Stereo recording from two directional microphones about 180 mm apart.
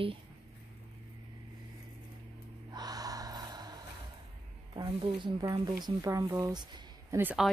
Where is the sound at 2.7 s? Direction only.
20° right (ahead or behind).